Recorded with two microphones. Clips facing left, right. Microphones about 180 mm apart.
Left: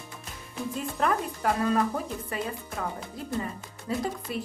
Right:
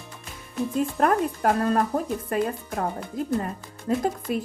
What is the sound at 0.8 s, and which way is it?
Speech, 45° right (ahead or behind).